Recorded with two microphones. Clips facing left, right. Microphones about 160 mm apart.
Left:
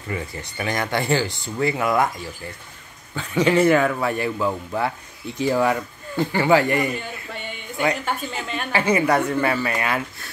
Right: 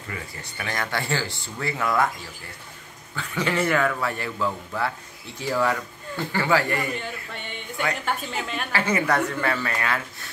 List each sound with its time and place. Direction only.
0.1 s speech: 20° left (ahead or behind)
3.2 s a man's voice: 20° left (ahead or behind)
8.0 s a woman's voice: centre (ahead or behind)
8.7 s speech: 15° left (ahead or behind)